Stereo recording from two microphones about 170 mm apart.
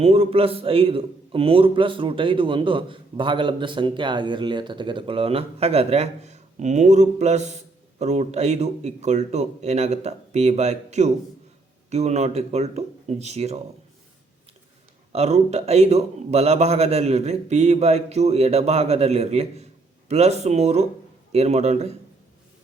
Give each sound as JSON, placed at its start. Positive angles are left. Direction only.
{"t": 0.0, "sound": "a man's voice", "side_deg": -35}
{"t": 15.1, "sound": "a man's voice", "side_deg": -40}